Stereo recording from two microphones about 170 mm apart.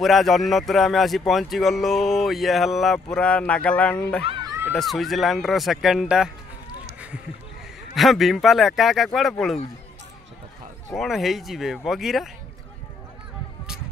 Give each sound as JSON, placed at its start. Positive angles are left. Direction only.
{"t": 0.0, "sound": "speech", "side_deg": 0}
{"t": 4.2, "sound": "speech", "side_deg": -35}
{"t": 4.7, "sound": "speech", "side_deg": 0}
{"t": 7.9, "sound": "speech", "side_deg": 0}
{"t": 11.0, "sound": "speech", "side_deg": 0}